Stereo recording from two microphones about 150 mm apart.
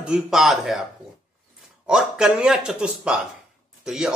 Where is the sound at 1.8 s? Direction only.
5° right (ahead or behind).